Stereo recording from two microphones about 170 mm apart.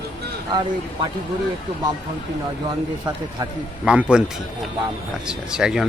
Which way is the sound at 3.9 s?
5° right (ahead or behind).